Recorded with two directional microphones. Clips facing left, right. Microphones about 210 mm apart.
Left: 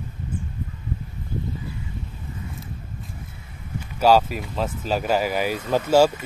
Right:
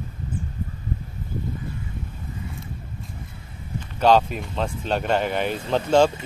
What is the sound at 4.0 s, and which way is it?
Speech, 5° left (ahead or behind).